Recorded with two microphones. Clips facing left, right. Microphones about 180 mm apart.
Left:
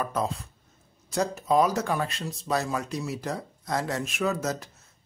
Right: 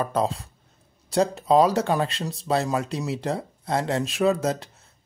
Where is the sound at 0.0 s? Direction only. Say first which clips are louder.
Right 4 dB; 30° right (ahead or behind).